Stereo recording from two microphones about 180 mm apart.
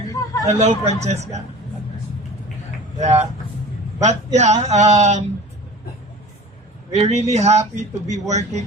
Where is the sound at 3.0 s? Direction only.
35° right (ahead or behind).